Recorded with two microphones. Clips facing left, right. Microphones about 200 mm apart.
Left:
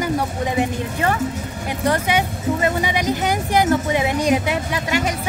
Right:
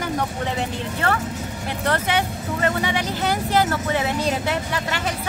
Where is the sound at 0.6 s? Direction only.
15° left (ahead or behind).